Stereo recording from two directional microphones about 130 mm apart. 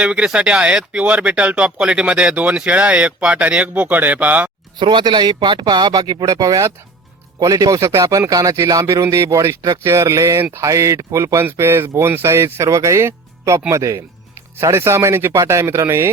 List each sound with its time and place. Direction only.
0.0 s speech: 10° right (ahead or behind)
4.8 s speech: 35° right (ahead or behind); by 16.0 s 20° right (ahead or behind)